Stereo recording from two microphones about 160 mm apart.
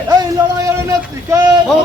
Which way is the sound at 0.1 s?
25° right (ahead or behind).